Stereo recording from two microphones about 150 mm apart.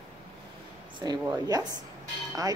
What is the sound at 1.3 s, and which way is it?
Speech, 25° right (ahead or behind).